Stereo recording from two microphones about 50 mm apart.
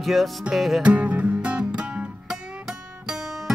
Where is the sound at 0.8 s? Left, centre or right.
Right.